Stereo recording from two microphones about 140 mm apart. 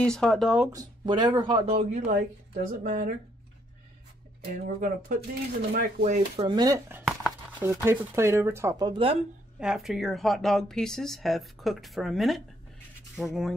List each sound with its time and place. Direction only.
0.0 s speech: 5° left (ahead or behind)
0.7 s speech: 30° right (ahead or behind)
2.5 s speech: 70° right (ahead or behind)
4.7 s speech: 75° right (ahead or behind)
5.7 s speech: 85° right
6.3 s speech: 30° right (ahead or behind)
7.1 s a sound: 5° right (ahead or behind)
7.6 s speech: 15° right (ahead or behind)
8.9 s speech: 40° right (ahead or behind)
9.6 s speech: 5° right (ahead or behind)